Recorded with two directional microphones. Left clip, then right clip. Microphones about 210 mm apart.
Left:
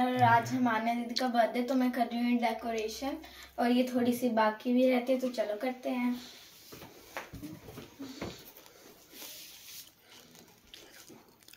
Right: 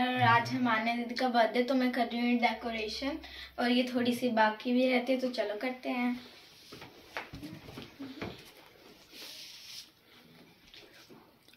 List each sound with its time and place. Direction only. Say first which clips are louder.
0.0 s a woman's voice: left 1 dB; centre (ahead or behind)
4.7 s speech: left 3 dB; 15° left (ahead or behind)